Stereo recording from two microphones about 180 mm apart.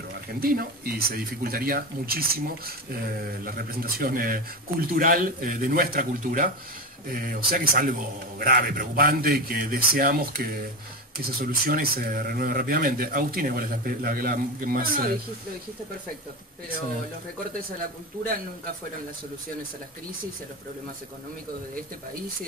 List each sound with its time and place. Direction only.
0.4 s speech: 55° right (ahead or behind)